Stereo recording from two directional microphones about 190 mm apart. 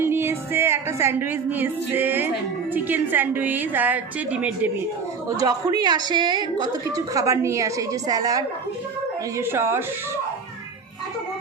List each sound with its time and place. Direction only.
0.0 s music: 10° right (ahead or behind)
2.7 s a woman's voice: 10° right (ahead or behind)
5.4 s a woman's voice: 20° right (ahead or behind)